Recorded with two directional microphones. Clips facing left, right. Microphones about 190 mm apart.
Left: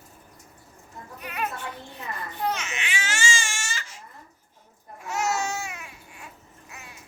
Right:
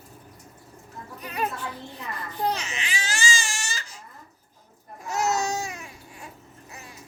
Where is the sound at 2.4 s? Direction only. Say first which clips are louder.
Right 2 dB; 35° right (ahead or behind).